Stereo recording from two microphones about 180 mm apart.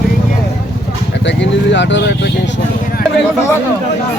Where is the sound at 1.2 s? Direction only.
80° left.